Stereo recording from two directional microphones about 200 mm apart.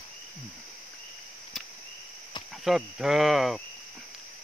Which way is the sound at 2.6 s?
Centre (ahead or behind).